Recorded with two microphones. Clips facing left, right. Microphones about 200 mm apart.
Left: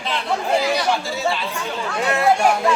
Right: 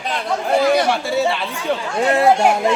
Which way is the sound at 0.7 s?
50° right (ahead or behind).